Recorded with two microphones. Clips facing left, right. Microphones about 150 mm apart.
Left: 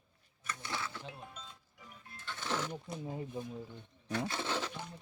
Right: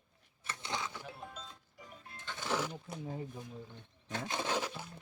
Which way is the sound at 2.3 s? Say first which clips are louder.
Right 1 dB; 15° right (ahead or behind).